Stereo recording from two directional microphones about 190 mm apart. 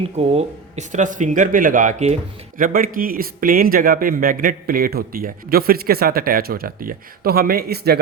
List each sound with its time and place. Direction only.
0.2 s speech: 35° right (ahead or behind); by 7.9 s 55° right (ahead or behind)